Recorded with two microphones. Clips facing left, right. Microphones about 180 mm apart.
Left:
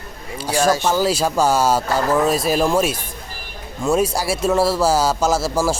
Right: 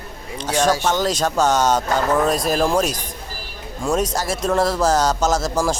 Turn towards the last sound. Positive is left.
turn(degrees=5)  # may be behind; listen again after turning